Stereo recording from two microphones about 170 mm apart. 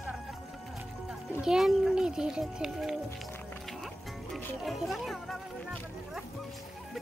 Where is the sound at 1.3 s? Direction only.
5° right (ahead or behind).